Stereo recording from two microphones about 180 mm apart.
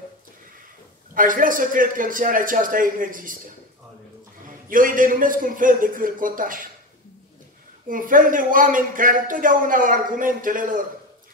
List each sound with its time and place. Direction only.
1.1 s speech: 50° right (ahead or behind)
4.5 s speech: 50° right (ahead or behind)
7.9 s speech: 50° right (ahead or behind)